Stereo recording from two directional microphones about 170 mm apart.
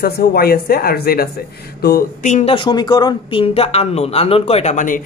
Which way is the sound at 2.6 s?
25° left (ahead or behind).